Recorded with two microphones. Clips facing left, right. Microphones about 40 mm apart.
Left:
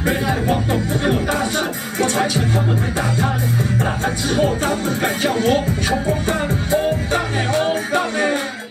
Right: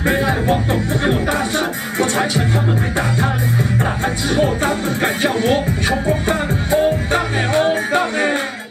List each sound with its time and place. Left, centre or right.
2.0 s music: right
4.6 s music: right